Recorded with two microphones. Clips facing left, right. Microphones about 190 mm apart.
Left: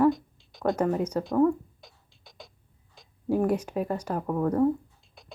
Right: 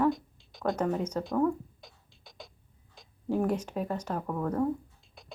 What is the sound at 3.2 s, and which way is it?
Speech, 10° left (ahead or behind).